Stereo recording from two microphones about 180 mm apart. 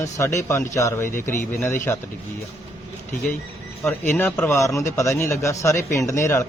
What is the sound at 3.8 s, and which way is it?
Speech, 10° left (ahead or behind).